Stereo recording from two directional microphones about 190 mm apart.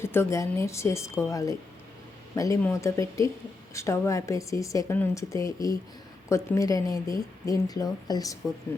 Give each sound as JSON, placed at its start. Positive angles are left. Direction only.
{"t": 0.0, "sound": "speech", "side_deg": 15}